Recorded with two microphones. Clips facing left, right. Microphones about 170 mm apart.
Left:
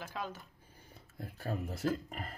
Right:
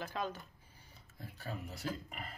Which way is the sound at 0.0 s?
5° left (ahead or behind).